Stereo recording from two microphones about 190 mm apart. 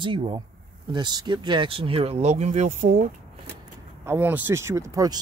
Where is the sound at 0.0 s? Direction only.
25° right (ahead or behind); by 3.1 s 45° right (ahead or behind).